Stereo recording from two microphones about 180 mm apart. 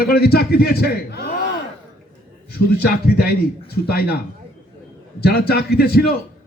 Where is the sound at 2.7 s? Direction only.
60° left (ahead or behind).